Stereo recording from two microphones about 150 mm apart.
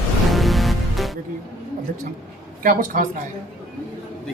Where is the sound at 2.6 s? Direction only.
65° right (ahead or behind).